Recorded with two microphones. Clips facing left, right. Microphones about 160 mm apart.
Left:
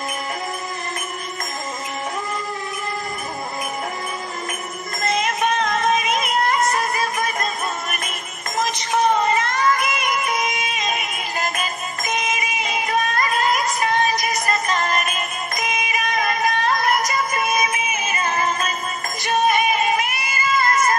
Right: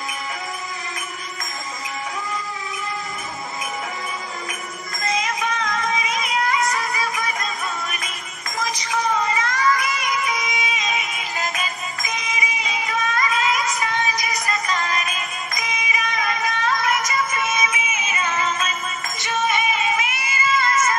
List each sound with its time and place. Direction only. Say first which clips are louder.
5.0 s music: left 3 dB; 55° left (ahead or behind)
8.6 s a sound: left 4 dB; 60° left (ahead or behind)
9.5 s music: left 1 dB; 55° left (ahead or behind)